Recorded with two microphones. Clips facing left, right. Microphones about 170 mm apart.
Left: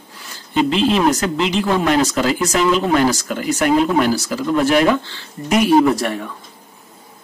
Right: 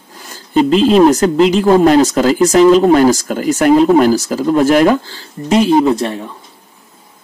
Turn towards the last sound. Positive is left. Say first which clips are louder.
# right 3 dB
turn(degrees=-25)  # may be behind; listen again after turning